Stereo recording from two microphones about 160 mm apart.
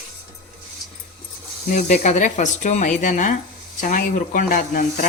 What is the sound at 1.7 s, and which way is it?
A woman's voice, 50° left (ahead or behind).